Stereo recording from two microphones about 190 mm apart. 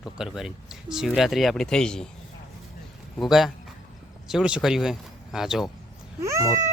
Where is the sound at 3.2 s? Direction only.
Centre (ahead or behind).